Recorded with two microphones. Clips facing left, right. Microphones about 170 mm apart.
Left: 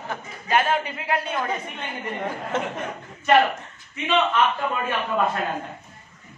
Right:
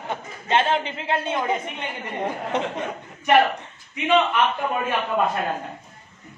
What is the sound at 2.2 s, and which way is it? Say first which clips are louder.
Speech: right 3 dB; 20° right (ahead or behind).